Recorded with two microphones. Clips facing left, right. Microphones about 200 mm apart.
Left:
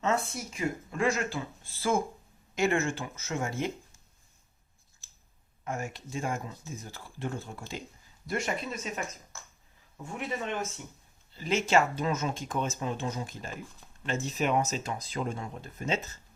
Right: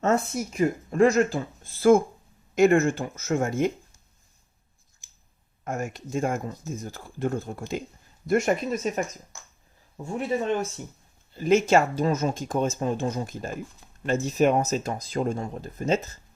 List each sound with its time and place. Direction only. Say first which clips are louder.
0.0 s speech: right 6 dB; 45° right (ahead or behind)
5.6 s speech: right 5 dB; 45° right (ahead or behind)
10.1 s speech: right 9 dB; 35° right (ahead or behind)
11.3 s speech: right 10 dB; 50° right (ahead or behind)
11.7 s speech: right 5 dB; 40° right (ahead or behind)